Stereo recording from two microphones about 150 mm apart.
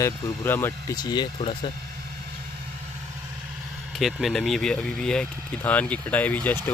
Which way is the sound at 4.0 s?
Centre (ahead or behind).